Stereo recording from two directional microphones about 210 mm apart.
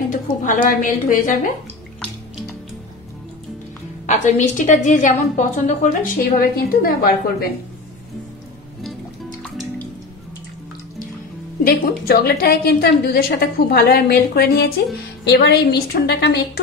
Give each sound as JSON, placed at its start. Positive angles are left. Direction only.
{"t": 0.4, "sound": "a woman's voice", "side_deg": 40}
{"t": 4.0, "sound": "a woman's voice", "side_deg": 35}
{"t": 9.4, "sound": "music", "side_deg": 5}
{"t": 11.6, "sound": "a woman's voice", "side_deg": 45}